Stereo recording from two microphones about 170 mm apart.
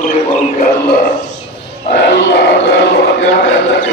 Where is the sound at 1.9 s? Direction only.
85° left.